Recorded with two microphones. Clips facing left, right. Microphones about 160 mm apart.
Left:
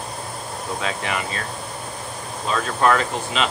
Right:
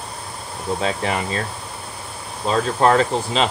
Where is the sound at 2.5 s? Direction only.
35° right (ahead or behind).